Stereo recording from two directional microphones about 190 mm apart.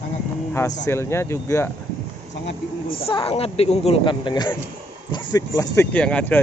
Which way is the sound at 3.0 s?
30° left (ahead or behind).